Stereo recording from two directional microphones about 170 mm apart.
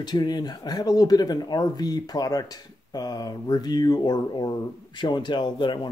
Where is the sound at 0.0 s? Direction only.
25° left (ahead or behind).